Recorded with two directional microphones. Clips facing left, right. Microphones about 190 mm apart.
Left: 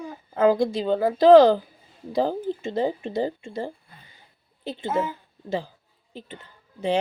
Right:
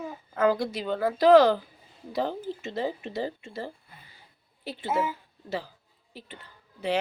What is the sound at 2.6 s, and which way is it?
Speech, 30° left (ahead or behind).